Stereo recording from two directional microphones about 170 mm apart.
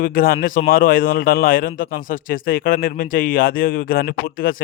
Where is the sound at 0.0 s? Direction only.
55° left (ahead or behind).